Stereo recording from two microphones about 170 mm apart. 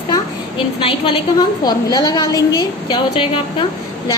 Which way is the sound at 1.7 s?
25° left (ahead or behind).